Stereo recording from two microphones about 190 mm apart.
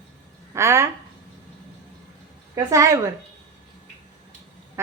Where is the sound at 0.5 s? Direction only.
15° right (ahead or behind).